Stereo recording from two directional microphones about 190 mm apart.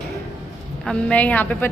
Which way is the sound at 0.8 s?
5° left (ahead or behind).